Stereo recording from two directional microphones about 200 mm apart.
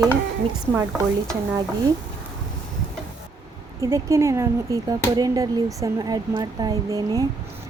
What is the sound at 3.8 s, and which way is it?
Speech, 15° right (ahead or behind).